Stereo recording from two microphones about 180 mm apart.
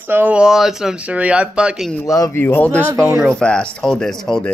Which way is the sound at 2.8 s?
15° right (ahead or behind).